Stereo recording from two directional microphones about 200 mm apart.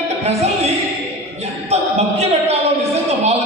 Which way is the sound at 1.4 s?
30° right (ahead or behind).